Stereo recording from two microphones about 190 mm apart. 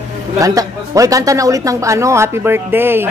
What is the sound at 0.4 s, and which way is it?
Speech, 15° right (ahead or behind).